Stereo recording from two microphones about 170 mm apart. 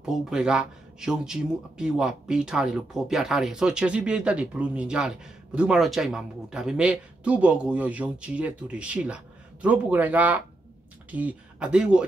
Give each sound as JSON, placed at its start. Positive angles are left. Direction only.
{"t": 0.0, "sound": "speech", "side_deg": -5}